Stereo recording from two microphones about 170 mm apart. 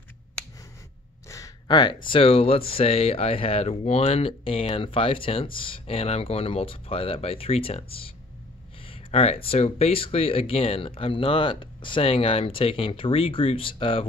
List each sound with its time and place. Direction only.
1.3 s speech: 25° left (ahead or behind)